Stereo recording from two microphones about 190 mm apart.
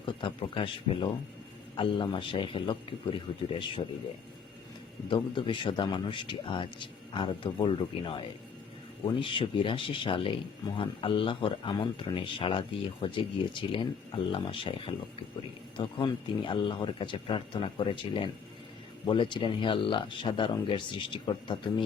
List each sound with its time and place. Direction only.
0.0 s a man's voice: 25° left (ahead or behind)
5.0 s a man's voice: 25° left (ahead or behind)